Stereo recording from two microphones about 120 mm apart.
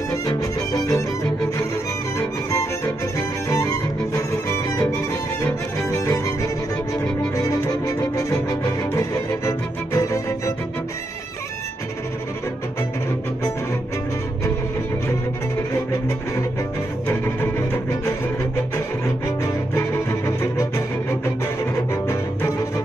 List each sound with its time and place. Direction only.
0.7 s music: 30° left (ahead or behind)
2.1 s music: 25° left (ahead or behind)
5.9 s music: 25° left (ahead or behind)
7.3 s music: 30° left (ahead or behind)
9.5 s music: 25° left (ahead or behind)
19.4 s music: 25° left (ahead or behind)